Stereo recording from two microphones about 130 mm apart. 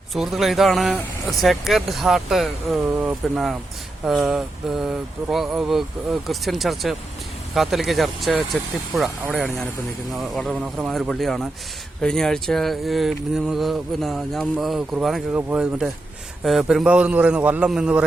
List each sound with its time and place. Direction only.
0.1 s speech: centre (ahead or behind)
2.8 s a man's voice: 15° right (ahead or behind)
3.3 s a man's voice: 5° right (ahead or behind)
15.3 s a man's voice: 15° right (ahead or behind)